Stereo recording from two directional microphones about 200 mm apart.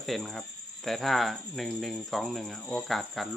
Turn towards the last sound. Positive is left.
turn(degrees=0)  # may be behind; listen again after turning